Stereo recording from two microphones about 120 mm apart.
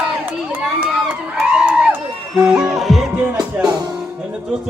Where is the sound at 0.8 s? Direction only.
10° right (ahead or behind).